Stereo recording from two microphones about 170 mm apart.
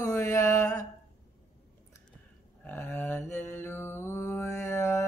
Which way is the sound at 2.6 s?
10° left (ahead or behind).